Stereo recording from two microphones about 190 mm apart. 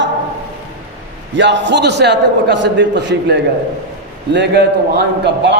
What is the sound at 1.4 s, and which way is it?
A man's voice, 65° right (ahead or behind).